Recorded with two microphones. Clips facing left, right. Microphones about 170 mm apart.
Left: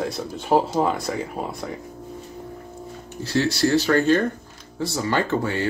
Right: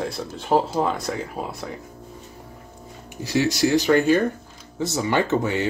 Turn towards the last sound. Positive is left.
turn(degrees=-20)  # may be behind; listen again after turning